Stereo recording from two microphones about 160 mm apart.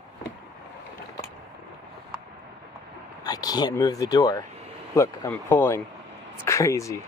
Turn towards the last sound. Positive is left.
turn(degrees=20)  # may be behind; listen again after turning